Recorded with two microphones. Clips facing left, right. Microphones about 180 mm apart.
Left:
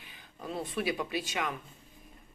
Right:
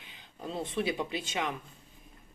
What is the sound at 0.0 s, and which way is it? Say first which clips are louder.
Speech: right 2 dB; 20° right (ahead or behind).